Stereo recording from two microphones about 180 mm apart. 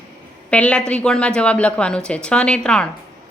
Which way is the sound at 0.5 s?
5° left (ahead or behind).